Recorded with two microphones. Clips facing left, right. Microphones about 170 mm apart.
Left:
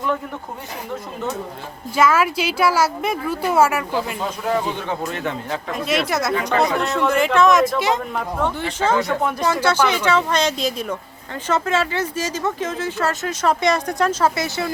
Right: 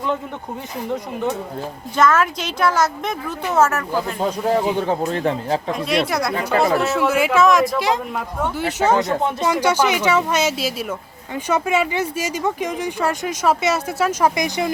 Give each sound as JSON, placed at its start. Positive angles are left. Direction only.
{"t": 2.0, "sound": "a woman's voice", "side_deg": 10}
{"t": 4.8, "sound": "speech", "side_deg": -35}
{"t": 5.7, "sound": "a man's voice", "side_deg": 0}
{"t": 8.5, "sound": "speech", "side_deg": -10}
{"t": 9.5, "sound": "speech", "side_deg": -10}